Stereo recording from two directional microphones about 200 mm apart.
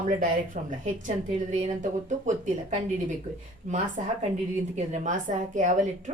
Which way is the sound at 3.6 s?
35° right (ahead or behind).